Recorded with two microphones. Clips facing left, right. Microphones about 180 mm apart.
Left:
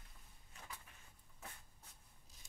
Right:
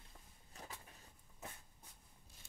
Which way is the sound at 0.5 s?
35° right (ahead or behind).